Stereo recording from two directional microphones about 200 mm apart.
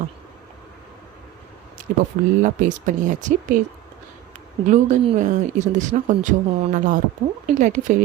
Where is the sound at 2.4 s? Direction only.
40° right (ahead or behind).